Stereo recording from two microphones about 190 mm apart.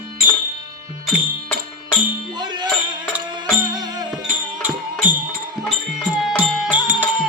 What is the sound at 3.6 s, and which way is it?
Music, 20° right (ahead or behind).